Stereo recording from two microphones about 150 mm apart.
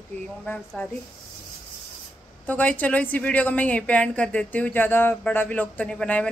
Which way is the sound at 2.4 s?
10° left (ahead or behind).